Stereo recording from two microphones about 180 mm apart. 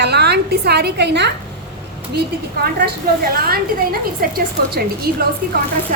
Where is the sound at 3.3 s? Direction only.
55° right (ahead or behind).